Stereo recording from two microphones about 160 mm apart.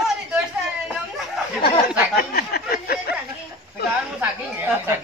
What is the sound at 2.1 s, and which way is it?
Speech, 70° left (ahead or behind).